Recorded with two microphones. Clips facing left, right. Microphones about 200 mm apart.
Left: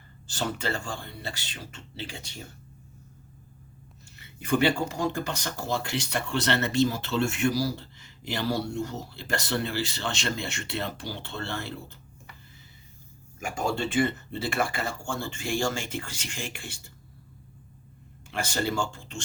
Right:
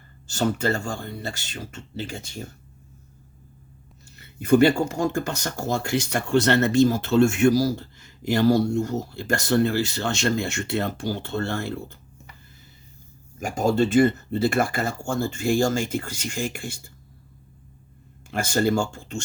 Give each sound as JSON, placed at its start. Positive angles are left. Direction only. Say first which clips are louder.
{"t": 0.3, "sound": "speech", "louder": "right 7 dB", "side_deg": -45}
{"t": 4.4, "sound": "speech", "louder": "right 7 dB", "side_deg": -45}
{"t": 13.4, "sound": "speech", "louder": "right 8 dB", "side_deg": -40}
{"t": 18.3, "sound": "speech", "louder": "right 7 dB", "side_deg": -45}